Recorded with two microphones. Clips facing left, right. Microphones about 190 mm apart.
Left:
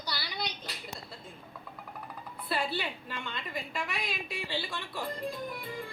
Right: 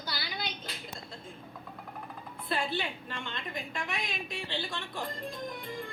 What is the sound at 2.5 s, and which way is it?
A woman's voice, 5° left (ahead or behind).